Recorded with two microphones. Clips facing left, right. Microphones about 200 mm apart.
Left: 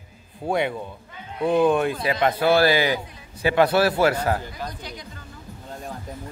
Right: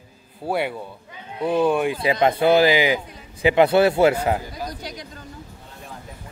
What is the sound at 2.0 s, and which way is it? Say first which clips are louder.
A man's voice: right 3 dB; 25° right (ahead or behind).